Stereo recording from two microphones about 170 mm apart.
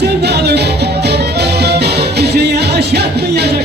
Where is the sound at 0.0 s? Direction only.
75° right (ahead or behind).